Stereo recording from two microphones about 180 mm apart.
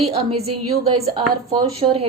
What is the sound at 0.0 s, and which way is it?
A woman's voice, 35° right (ahead or behind).